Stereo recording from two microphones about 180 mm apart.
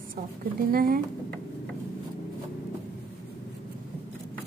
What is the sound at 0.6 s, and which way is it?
Speech, 55° right (ahead or behind).